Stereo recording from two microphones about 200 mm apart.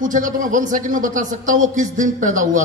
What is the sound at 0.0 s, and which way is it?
Speech, 40° right (ahead or behind).